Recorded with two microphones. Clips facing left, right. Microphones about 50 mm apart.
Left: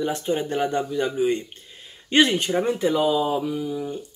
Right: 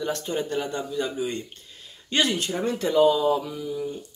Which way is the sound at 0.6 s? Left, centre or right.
Left.